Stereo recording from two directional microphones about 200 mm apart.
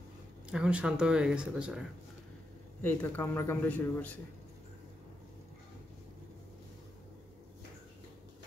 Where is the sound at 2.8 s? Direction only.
10° left (ahead or behind).